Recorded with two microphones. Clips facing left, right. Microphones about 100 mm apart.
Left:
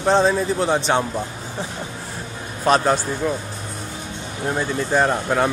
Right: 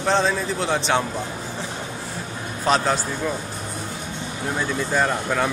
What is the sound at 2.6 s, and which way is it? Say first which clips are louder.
Speech: left 3 dB; 10° left (ahead or behind).